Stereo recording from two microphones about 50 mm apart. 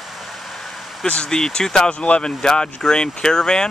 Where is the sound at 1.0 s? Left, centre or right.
Centre.